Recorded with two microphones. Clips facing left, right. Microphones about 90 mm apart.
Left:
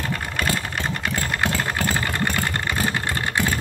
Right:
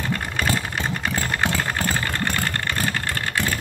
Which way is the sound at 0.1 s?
Centre (ahead or behind).